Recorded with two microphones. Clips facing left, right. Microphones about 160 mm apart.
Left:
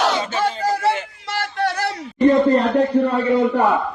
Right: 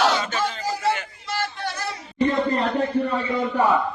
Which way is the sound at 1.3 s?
70° left (ahead or behind).